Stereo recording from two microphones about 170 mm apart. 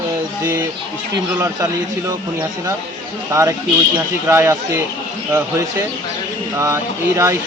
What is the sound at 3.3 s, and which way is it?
Speech, 20° right (ahead or behind).